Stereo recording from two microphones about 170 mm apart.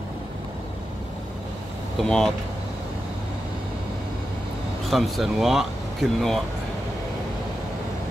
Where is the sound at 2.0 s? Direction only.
5° left (ahead or behind).